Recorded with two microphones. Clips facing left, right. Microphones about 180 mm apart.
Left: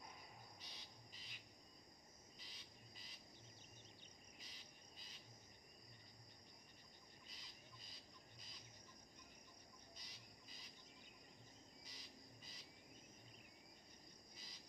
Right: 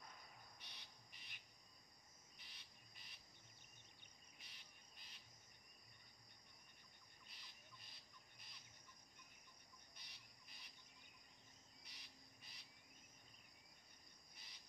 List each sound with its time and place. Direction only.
0.6 s bird: 60° right (ahead or behind)
4.4 s cricket: 60° right (ahead or behind)
7.2 s bird: 60° right (ahead or behind)
9.9 s cricket: 60° right (ahead or behind)
11.8 s bird: 65° right (ahead or behind)
14.3 s cricket: 65° right (ahead or behind)